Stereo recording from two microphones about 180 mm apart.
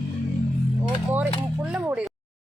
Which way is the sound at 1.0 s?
10° right (ahead or behind).